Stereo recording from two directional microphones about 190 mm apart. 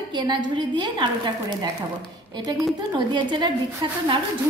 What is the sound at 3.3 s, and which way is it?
Speech, 25° right (ahead or behind).